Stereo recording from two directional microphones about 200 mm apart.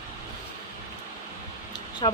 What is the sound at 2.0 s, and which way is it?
Speech, 20° left (ahead or behind).